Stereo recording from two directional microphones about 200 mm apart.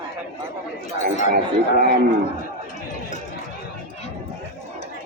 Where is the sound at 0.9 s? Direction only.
35° left (ahead or behind).